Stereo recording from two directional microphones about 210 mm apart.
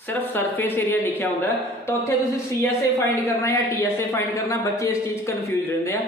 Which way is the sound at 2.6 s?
15° left (ahead or behind).